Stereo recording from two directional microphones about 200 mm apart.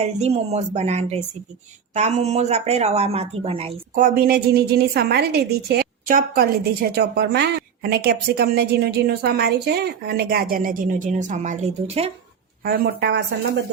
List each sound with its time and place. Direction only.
0.0 s speech: 30° right (ahead or behind)
3.9 s a woman's voice: 45° right (ahead or behind)
12.6 s speech: 55° right (ahead or behind)